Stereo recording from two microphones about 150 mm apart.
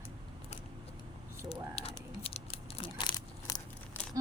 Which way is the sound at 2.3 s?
40° left (ahead or behind).